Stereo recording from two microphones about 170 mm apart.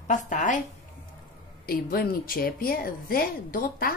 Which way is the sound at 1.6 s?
65° left (ahead or behind).